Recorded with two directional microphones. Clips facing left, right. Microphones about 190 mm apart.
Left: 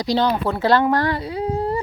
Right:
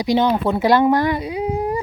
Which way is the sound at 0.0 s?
15° right (ahead or behind).